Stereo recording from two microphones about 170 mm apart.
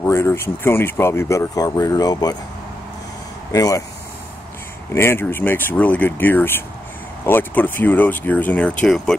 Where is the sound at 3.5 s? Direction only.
20° left (ahead or behind).